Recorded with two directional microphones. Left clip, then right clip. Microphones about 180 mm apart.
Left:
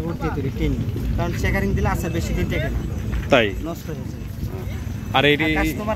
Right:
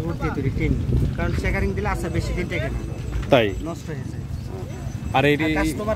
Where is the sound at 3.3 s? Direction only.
15° right (ahead or behind).